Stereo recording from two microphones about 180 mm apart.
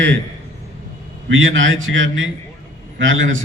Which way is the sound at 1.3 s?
90° right.